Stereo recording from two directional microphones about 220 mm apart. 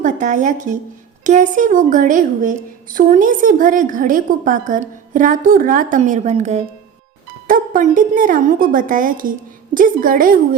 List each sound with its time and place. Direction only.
0.0 s a woman's voice: 35° right (ahead or behind)